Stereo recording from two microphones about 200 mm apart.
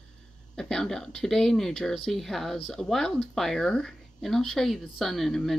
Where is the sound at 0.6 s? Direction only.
5° left (ahead or behind).